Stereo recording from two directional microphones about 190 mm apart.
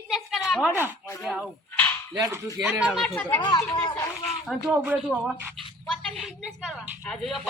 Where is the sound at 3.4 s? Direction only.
20° left (ahead or behind).